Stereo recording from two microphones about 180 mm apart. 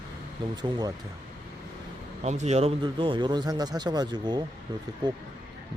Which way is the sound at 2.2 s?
40° right (ahead or behind).